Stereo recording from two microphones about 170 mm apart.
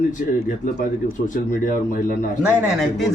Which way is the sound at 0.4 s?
50° left (ahead or behind).